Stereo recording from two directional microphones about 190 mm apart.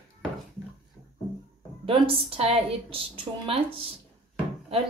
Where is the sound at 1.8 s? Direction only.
30° right (ahead or behind).